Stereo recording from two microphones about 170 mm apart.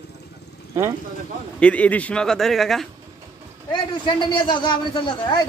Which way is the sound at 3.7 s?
30° left (ahead or behind).